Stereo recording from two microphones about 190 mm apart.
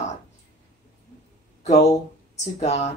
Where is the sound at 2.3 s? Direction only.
35° left (ahead or behind).